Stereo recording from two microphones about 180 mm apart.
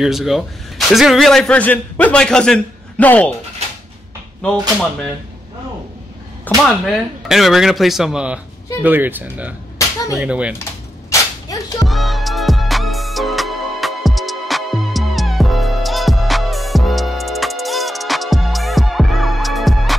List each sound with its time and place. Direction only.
0.0 s a man's voice: centre (ahead or behind)
4.4 s a man's voice: 5° left (ahead or behind)
6.5 s speech: 10° left (ahead or behind)
7.2 s a man's voice: centre (ahead or behind)
11.1 s dog: 20° left (ahead or behind)
11.8 s music: centre (ahead or behind)